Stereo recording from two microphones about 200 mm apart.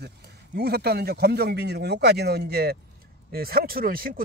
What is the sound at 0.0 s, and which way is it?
A man's voice, 55° right (ahead or behind).